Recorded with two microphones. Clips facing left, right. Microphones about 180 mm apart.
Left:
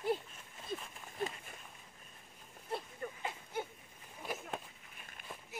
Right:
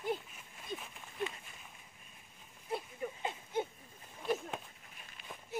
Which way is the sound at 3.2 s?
20° right (ahead or behind).